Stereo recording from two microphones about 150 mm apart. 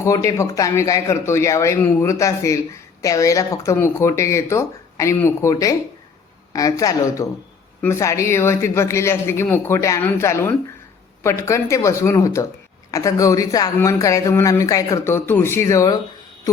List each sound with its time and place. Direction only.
0.0 s speech: 20° left (ahead or behind)